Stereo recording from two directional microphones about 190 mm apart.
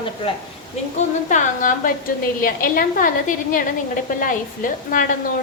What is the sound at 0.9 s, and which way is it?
A woman's voice, 40° left (ahead or behind).